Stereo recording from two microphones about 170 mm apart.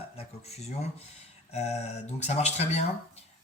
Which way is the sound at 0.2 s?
40° left (ahead or behind).